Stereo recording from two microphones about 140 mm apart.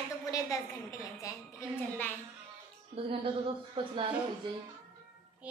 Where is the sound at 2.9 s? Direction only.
40° right (ahead or behind).